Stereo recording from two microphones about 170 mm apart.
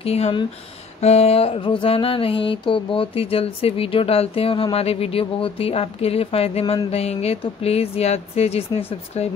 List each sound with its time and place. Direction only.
0.0 s mantra: 35° left (ahead or behind)